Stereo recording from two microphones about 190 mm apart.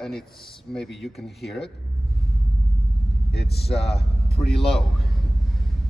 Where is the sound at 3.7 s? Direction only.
30° left (ahead or behind).